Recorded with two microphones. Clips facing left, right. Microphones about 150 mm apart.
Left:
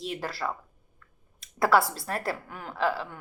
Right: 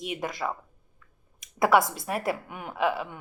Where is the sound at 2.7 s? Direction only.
Centre (ahead or behind).